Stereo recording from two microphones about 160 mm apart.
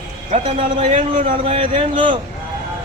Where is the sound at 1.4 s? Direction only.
35° right (ahead or behind).